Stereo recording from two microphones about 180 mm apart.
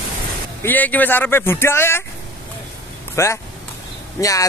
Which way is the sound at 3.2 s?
15° left (ahead or behind).